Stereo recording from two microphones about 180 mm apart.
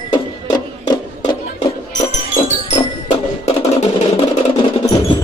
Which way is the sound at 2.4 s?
30° left (ahead or behind).